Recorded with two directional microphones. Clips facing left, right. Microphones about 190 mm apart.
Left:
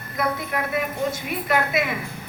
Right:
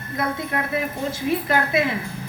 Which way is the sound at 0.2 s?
25° right (ahead or behind).